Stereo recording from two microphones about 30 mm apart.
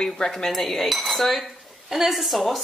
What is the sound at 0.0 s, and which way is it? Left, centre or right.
Cutlery, left.